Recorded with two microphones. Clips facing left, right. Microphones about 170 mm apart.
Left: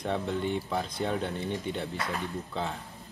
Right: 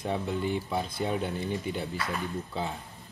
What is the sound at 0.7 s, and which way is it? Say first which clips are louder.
Cutlery: even; 15° right (ahead or behind).